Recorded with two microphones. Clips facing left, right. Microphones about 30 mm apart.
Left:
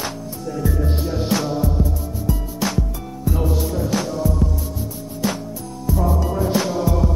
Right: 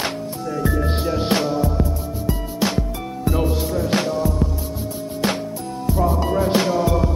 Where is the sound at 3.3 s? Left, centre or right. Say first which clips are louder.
Right 1 dB; right.